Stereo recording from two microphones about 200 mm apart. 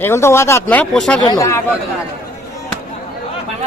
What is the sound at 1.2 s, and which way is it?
Speech, 20° left (ahead or behind).